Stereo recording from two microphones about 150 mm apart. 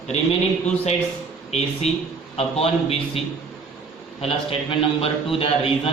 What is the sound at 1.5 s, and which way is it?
A man's voice, 45° left (ahead or behind).